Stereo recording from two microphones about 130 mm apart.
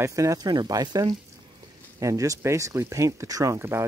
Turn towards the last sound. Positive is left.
turn(degrees=-20)  # may be behind; listen again after turning